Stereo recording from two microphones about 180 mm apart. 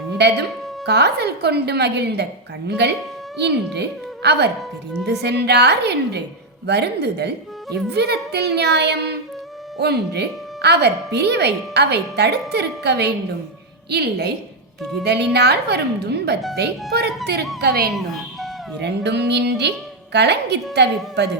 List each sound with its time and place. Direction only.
0.2 s a woman's voice: 70° right (ahead or behind)
17.9 s music: centre (ahead or behind)
18.8 s speech: 70° right (ahead or behind)